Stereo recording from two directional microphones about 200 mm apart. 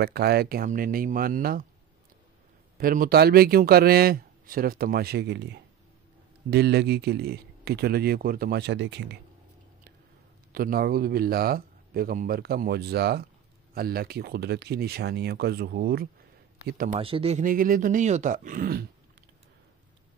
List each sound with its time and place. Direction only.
0.0 s a man's voice: 50° right (ahead or behind)
2.8 s a man's voice: 45° right (ahead or behind); by 9.2 s 65° right (ahead or behind)
10.5 s a man's voice: 45° right (ahead or behind)
16.9 s speech: 30° right (ahead or behind); by 18.9 s 45° right (ahead or behind)